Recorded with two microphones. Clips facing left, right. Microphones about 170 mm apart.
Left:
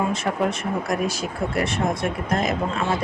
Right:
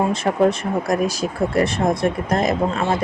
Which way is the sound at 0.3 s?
40° right (ahead or behind).